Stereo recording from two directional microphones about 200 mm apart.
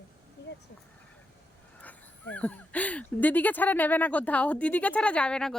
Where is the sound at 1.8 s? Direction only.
5° left (ahead or behind).